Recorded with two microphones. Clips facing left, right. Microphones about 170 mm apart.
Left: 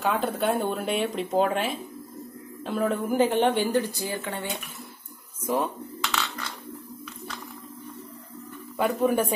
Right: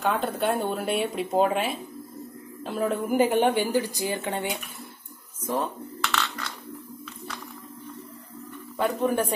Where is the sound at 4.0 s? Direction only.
20° right (ahead or behind).